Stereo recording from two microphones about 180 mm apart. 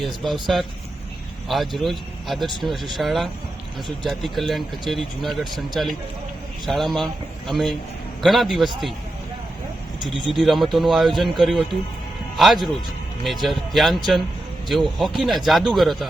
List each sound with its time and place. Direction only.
0.0 s speech: centre (ahead or behind)
1.5 s speech: centre (ahead or behind)
10.3 s speech: centre (ahead or behind)